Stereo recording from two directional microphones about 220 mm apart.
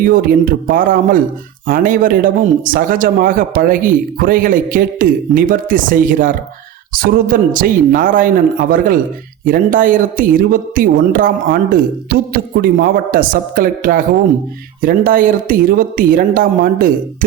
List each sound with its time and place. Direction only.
0.0 s a man's voice: 40° right (ahead or behind)